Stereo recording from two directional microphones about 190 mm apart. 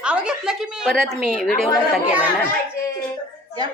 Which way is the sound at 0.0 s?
5° right (ahead or behind).